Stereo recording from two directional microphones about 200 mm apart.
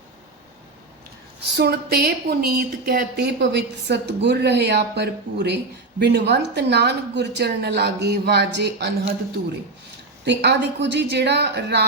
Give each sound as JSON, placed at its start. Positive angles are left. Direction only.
{"t": 1.5, "sound": "a woman's voice", "side_deg": -55}
{"t": 10.2, "sound": "a woman's voice", "side_deg": -60}